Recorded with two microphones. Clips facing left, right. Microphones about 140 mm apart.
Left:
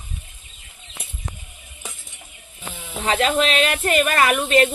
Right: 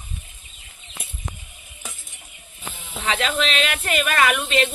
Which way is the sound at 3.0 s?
35° left (ahead or behind).